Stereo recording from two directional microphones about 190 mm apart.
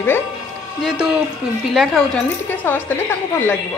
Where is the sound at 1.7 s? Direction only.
Centre (ahead or behind).